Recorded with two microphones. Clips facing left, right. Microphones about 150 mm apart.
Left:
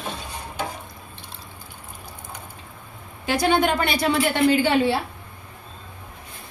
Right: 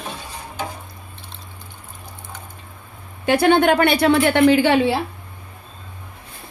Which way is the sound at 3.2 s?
60° right (ahead or behind).